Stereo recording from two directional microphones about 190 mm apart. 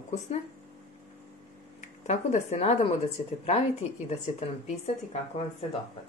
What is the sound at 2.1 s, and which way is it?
Speech, 40° left (ahead or behind).